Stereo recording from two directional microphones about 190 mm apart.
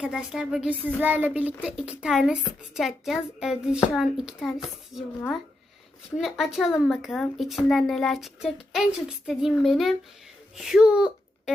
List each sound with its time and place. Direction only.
0.0 s a woman's voice: 5° right (ahead or behind)
6.1 s speech: centre (ahead or behind)